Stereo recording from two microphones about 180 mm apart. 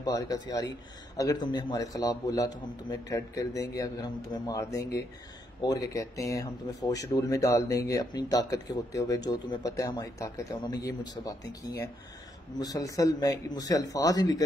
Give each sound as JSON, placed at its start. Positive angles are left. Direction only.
{"t": 0.0, "sound": "speech", "side_deg": 20}
{"t": 12.5, "sound": "speech", "side_deg": 20}